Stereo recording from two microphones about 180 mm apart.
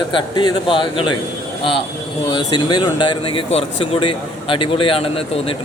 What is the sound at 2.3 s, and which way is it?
A man's voice, 25° left (ahead or behind).